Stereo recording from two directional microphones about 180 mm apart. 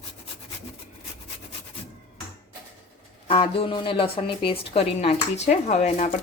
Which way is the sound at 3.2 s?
30° left (ahead or behind).